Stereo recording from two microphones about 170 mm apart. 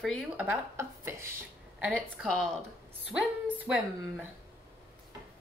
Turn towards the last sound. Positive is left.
turn(degrees=-5)  # may be behind; listen again after turning